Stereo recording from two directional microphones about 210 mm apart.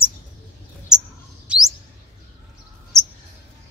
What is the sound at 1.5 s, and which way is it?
Chirp, 5° right (ahead or behind).